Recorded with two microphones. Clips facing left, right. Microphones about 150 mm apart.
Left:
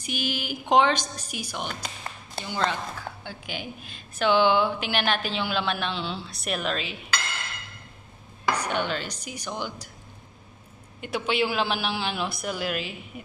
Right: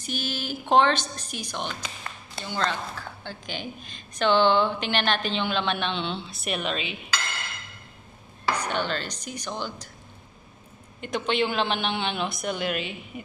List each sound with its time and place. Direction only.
0.0 s a woman's voice: 15° left (ahead or behind)
8.5 s a woman's voice: 10° left (ahead or behind)
11.0 s a man's voice: 5° left (ahead or behind)